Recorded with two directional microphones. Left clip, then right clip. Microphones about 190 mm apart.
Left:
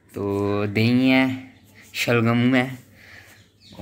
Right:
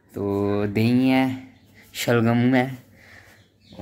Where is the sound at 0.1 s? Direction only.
10° right (ahead or behind).